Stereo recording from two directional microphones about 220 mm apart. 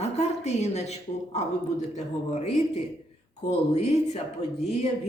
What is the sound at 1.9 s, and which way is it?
Speech, 30° left (ahead or behind).